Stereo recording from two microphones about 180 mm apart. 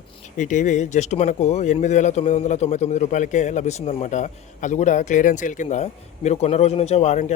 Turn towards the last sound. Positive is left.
turn(degrees=40)  # may be behind; listen again after turning